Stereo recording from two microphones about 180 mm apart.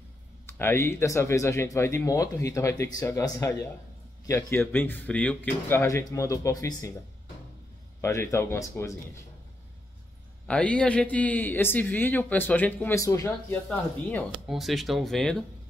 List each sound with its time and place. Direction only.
0.5 s a man's voice: 10° left (ahead or behind)
8.0 s a man's voice: 15° left (ahead or behind)
10.4 s a man's voice: 5° left (ahead or behind)
14.5 s speech: centre (ahead or behind)